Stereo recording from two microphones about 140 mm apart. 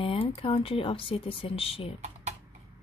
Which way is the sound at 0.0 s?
40° left (ahead or behind).